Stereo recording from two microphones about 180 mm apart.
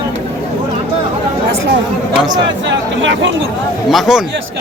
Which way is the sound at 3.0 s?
90° right.